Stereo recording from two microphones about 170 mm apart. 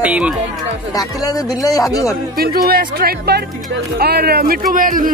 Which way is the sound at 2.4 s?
60° right (ahead or behind).